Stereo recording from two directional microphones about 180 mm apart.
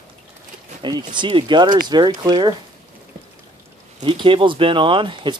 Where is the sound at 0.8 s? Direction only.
25° right (ahead or behind).